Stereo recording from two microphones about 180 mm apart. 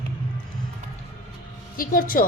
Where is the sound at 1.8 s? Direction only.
50° left (ahead or behind).